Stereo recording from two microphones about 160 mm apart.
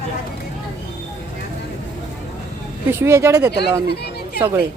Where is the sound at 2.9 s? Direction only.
15° right (ahead or behind).